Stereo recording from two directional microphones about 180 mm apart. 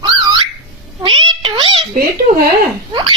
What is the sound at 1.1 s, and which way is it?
Cat, 25° right (ahead or behind).